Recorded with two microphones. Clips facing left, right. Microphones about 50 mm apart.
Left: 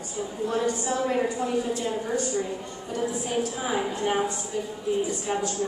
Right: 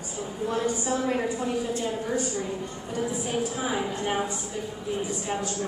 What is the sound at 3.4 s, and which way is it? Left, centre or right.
Speech, centre.